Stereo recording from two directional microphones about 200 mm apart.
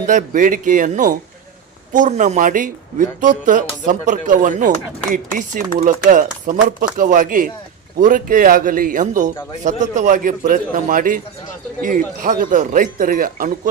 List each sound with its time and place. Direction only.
0.1 s speech: 40° right (ahead or behind)